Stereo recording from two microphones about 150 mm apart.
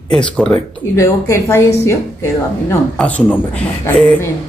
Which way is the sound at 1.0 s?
15° left (ahead or behind).